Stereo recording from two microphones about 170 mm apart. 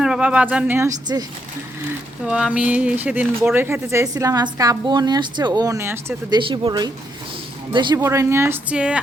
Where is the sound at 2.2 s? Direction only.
5° right (ahead or behind).